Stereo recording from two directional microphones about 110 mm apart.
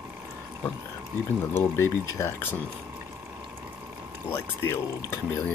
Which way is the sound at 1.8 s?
25° left (ahead or behind).